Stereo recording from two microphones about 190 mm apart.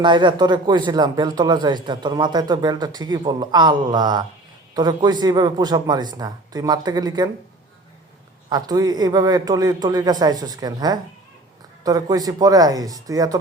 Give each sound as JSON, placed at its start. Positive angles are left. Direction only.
{"t": 0.0, "sound": "speech", "side_deg": -25}
{"t": 8.4, "sound": "speech", "side_deg": -20}